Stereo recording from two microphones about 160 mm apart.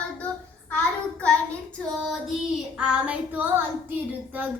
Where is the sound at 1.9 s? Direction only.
Centre (ahead or behind).